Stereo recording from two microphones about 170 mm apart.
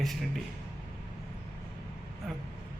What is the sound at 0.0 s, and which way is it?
Speech, centre (ahead or behind).